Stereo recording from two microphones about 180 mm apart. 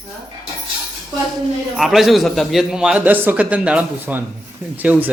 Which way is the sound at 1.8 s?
Centre (ahead or behind).